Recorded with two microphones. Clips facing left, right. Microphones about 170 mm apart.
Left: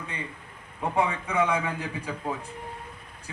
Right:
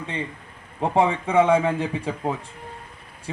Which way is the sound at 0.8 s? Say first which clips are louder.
Right 6 dB; 30° right (ahead or behind).